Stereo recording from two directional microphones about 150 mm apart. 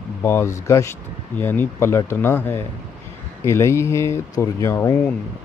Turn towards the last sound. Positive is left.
turn(degrees=20)  # may be behind; listen again after turning